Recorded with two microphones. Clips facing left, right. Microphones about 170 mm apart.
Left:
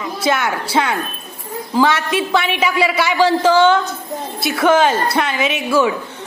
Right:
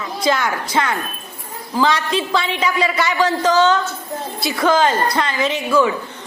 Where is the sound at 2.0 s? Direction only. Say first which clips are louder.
Left 2 dB; 15° left (ahead or behind).